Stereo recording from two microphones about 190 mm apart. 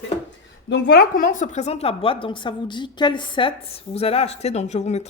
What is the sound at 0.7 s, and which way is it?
A woman's voice, 65° left (ahead or behind).